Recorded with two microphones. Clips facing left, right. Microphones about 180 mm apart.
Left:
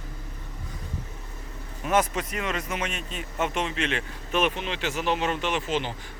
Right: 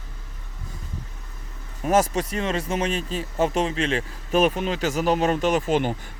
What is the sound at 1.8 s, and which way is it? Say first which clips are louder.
Speech: right 4 dB; 35° right (ahead or behind).